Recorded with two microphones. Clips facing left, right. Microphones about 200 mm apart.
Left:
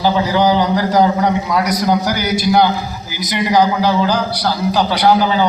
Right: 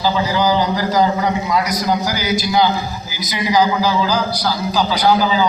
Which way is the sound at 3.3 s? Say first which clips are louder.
Left 2 dB; 60° left (ahead or behind).